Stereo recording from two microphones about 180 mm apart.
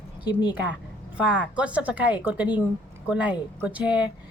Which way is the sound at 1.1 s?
5° right (ahead or behind).